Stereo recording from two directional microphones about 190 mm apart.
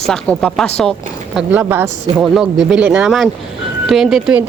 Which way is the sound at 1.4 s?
10° right (ahead or behind).